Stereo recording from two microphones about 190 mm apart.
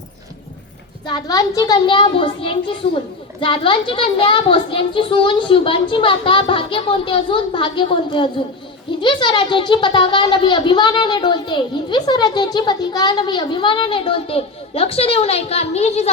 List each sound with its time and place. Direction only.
1.0 s a child's voice: 20° left (ahead or behind)